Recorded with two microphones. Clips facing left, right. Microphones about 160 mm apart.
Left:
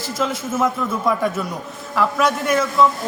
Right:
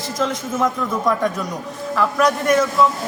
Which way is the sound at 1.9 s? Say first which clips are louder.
Right 1 dB; centre (ahead or behind).